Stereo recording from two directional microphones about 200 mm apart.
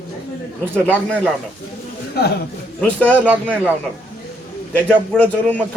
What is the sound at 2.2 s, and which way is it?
Speech, 50° left (ahead or behind).